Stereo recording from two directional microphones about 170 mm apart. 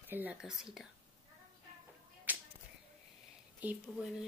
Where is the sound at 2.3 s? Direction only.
10° right (ahead or behind).